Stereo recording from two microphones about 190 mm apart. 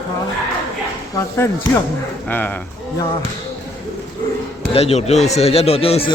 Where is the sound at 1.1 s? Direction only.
10° left (ahead or behind).